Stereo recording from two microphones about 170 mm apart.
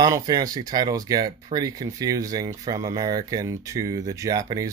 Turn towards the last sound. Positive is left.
turn(degrees=-20)  # may be behind; listen again after turning